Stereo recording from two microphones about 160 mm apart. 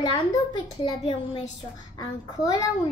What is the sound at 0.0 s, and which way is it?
A woman's voice, 25° left (ahead or behind).